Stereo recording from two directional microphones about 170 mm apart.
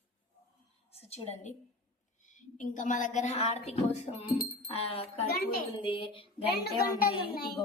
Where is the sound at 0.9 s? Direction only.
40° left (ahead or behind).